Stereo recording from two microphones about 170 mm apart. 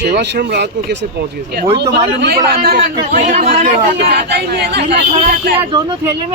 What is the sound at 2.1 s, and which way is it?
Speech, 85° right.